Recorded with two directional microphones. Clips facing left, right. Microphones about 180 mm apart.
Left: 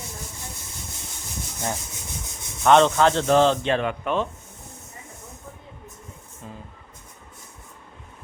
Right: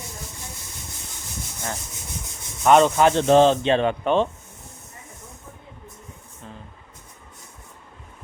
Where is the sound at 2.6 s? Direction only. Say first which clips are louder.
Right 1 dB; 10° right (ahead or behind); by 4.2 s 30° right (ahead or behind).